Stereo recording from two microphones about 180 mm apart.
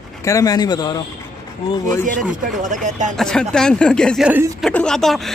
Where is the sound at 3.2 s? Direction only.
5° left (ahead or behind).